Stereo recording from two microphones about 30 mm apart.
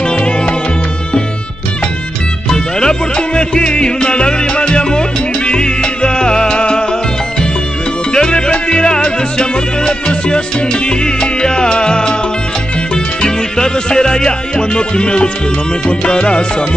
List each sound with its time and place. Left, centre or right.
0.0 s music: left
2.5 s music: left
8.1 s music: left